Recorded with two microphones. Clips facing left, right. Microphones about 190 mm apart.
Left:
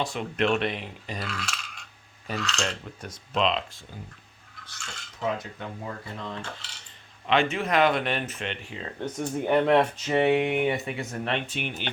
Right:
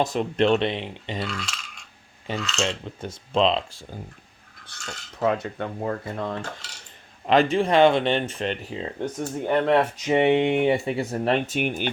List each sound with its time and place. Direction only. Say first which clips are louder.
0.0 s speech: right 5 dB; 40° right (ahead or behind)
1.2 s coin: right 3 dB; centre (ahead or behind)
2.3 s speech: right 3 dB; centre (ahead or behind)
2.6 s speech: right 5 dB; 25° right (ahead or behind)
5.2 s cutlery: right 6 dB; 65° right (ahead or behind); by 6.7 s 50° right (ahead or behind)
7.3 s speech: right 5 dB; 35° right (ahead or behind)
8.8 s speech: even; 10° right (ahead or behind)
9.3 s speech: even; 5° left (ahead or behind)
10.0 s speech: right 3 dB; 20° right (ahead or behind); by 11.9 s 45° right (ahead or behind)